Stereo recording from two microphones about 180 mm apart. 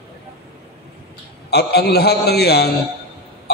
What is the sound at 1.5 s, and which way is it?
A man's voice, 65° left (ahead or behind).